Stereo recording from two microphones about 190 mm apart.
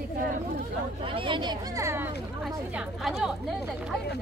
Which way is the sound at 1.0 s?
25° right (ahead or behind).